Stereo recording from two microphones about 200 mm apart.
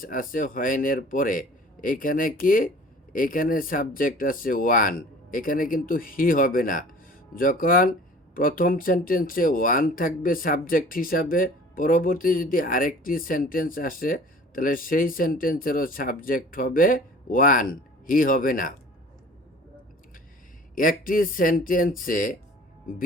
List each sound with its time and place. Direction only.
0.0 s speech: 45° left (ahead or behind)
20.7 s speech: 45° left (ahead or behind)